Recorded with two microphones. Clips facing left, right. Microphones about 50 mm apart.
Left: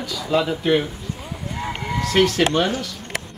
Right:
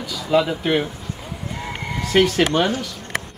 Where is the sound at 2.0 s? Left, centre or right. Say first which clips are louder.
Right 1 dB; centre.